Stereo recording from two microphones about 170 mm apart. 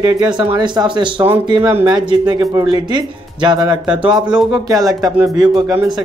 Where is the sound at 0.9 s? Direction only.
30° right (ahead or behind).